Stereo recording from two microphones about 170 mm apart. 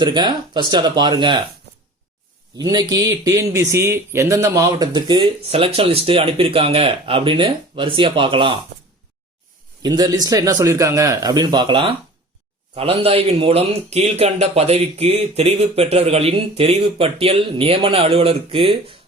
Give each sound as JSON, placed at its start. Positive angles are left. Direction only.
{"t": 0.0, "sound": "speech", "side_deg": -25}
{"t": 2.6, "sound": "speech", "side_deg": -25}
{"t": 9.8, "sound": "speech", "side_deg": -25}